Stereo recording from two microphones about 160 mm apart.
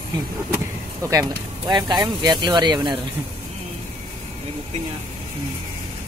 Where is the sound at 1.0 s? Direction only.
20° right (ahead or behind).